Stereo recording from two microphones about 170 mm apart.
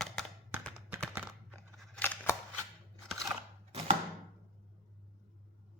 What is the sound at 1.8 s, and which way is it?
Scissors, 5° left (ahead or behind).